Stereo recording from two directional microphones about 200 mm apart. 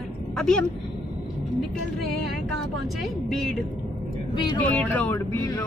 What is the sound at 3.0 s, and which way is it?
Speech, centre (ahead or behind).